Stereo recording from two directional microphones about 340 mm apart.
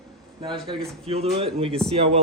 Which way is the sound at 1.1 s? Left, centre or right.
Centre.